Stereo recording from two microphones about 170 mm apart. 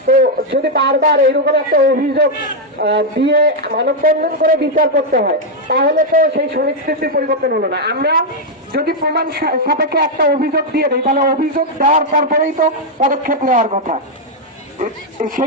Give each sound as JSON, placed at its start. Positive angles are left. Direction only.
{"t": 0.1, "sound": "a man's voice", "side_deg": -60}
{"t": 2.8, "sound": "a man's voice", "side_deg": -90}
{"t": 14.8, "sound": "speech", "side_deg": -50}